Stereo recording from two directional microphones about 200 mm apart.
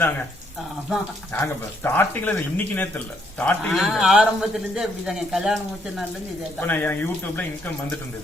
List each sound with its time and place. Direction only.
1.3 s speech: 10° left (ahead or behind)
6.7 s speech: 10° left (ahead or behind)